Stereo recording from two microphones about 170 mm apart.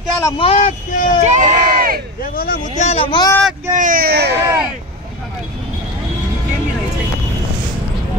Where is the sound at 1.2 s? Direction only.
45° right (ahead or behind).